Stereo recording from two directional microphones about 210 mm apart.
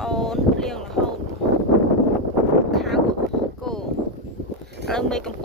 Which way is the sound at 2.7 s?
Centre (ahead or behind).